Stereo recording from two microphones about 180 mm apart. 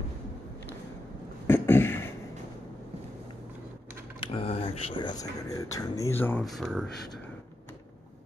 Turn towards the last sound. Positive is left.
turn(degrees=5)  # may be behind; listen again after turning